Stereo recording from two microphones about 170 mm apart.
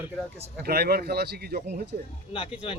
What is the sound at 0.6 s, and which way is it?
A man's voice, 65° right (ahead or behind).